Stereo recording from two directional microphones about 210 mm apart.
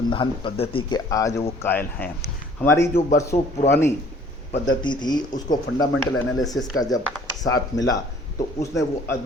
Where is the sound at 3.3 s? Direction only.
40° left (ahead or behind).